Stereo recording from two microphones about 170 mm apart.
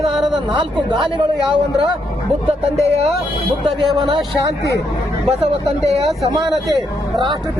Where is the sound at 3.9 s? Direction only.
Centre (ahead or behind).